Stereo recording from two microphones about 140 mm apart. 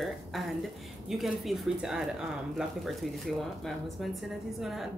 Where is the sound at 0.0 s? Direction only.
Centre (ahead or behind).